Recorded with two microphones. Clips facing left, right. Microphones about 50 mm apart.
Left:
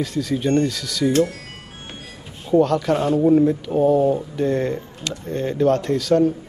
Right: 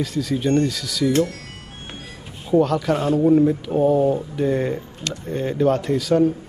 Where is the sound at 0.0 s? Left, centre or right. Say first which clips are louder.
Even; centre.